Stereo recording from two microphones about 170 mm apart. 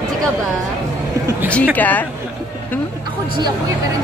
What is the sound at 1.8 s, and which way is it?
Speech, 10° left (ahead or behind).